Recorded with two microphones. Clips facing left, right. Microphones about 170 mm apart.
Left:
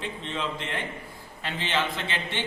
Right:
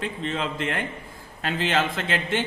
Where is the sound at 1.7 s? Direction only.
45° right (ahead or behind).